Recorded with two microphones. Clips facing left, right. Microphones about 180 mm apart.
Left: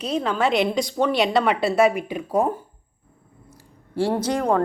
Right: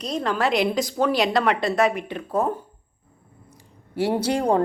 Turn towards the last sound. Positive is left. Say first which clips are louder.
# even
turn(degrees=-15)  # may be behind; listen again after turning